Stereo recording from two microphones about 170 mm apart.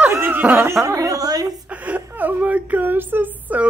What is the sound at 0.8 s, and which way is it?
Speech, 20° right (ahead or behind).